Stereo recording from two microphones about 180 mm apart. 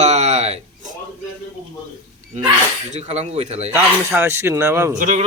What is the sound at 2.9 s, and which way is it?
Speech, 40° right (ahead or behind).